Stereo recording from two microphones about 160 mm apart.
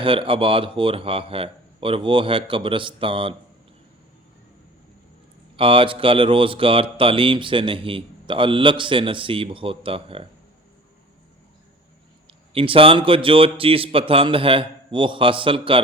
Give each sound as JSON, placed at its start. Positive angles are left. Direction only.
{"t": 0.0, "sound": "speech", "side_deg": -35}
{"t": 5.5, "sound": "speech", "side_deg": -35}
{"t": 12.3, "sound": "speech", "side_deg": -35}